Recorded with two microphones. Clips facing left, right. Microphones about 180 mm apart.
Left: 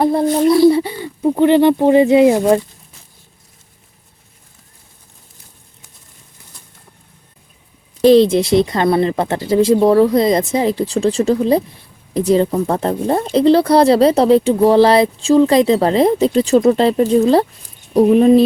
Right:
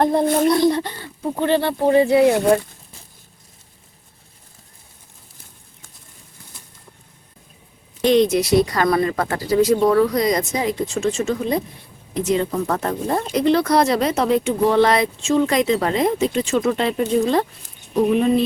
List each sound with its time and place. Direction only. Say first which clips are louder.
0.0 s speech: left 3 dB; 5° left (ahead or behind)
8.0 s a woman's voice: left 6 dB; 30° left (ahead or behind)